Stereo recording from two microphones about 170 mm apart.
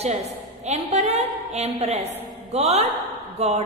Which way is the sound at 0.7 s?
40° right (ahead or behind).